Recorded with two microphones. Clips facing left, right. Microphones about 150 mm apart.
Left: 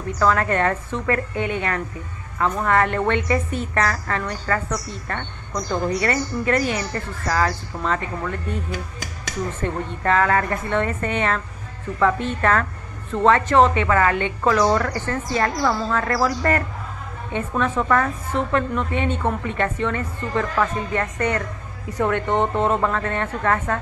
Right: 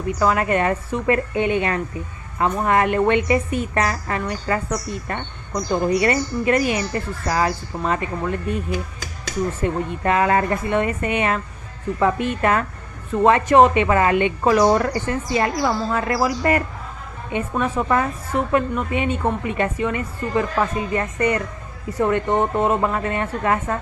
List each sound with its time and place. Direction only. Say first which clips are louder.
0.2 s a woman's voice: even; 10° right (ahead or behind)